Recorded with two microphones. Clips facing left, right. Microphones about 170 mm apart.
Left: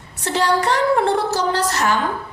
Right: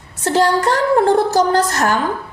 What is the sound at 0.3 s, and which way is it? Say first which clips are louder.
A woman's voice: right 4 dB; 40° right (ahead or behind).